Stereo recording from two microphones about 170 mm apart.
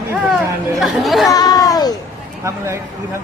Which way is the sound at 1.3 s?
20° left (ahead or behind).